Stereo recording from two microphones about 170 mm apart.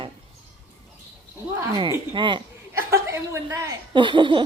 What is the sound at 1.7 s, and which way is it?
Speech, 25° right (ahead or behind).